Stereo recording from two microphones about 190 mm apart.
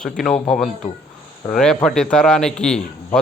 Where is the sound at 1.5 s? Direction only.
5° left (ahead or behind).